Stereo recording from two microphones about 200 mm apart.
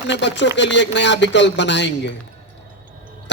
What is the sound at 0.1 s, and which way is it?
A man's voice, 60° left (ahead or behind).